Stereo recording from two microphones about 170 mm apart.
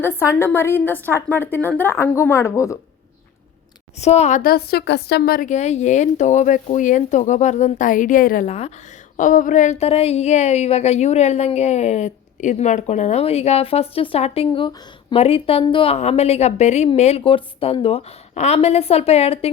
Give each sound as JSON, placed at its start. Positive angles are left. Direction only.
{"t": 0.0, "sound": "a woman's voice", "side_deg": 15}
{"t": 3.9, "sound": "speech", "side_deg": 40}
{"t": 5.5, "sound": "speech", "side_deg": 40}
{"t": 8.4, "sound": "speech", "side_deg": 40}
{"t": 9.1, "sound": "speech", "side_deg": 50}